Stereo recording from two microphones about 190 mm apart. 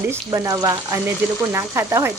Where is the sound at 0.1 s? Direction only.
15° right (ahead or behind).